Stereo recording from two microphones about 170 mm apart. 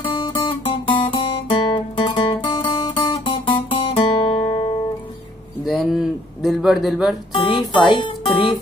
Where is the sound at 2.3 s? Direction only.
30° left (ahead or behind).